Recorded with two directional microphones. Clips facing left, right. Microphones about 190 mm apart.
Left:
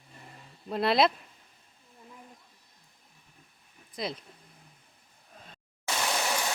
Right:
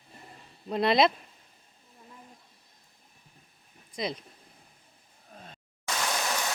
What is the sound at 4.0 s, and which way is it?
Speech, centre (ahead or behind).